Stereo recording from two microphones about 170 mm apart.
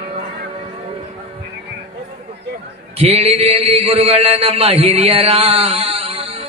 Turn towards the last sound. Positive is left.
turn(degrees=-35)  # may be behind; listen again after turning